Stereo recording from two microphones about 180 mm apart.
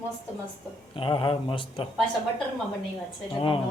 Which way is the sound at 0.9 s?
30° left (ahead or behind).